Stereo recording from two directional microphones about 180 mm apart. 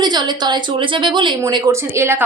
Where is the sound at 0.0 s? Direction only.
25° right (ahead or behind).